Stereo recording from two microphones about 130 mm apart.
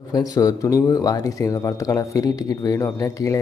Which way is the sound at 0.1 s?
30° left (ahead or behind).